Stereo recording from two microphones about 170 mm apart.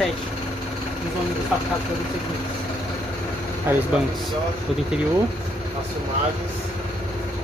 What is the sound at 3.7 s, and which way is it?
Speech, 15° right (ahead or behind).